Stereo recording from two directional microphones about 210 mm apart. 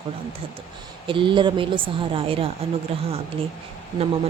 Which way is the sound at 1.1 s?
25° right (ahead or behind).